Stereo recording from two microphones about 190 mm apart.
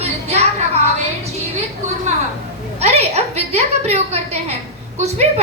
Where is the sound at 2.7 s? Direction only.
35° right (ahead or behind).